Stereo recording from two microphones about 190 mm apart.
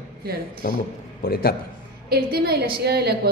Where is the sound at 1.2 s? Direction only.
55° left (ahead or behind).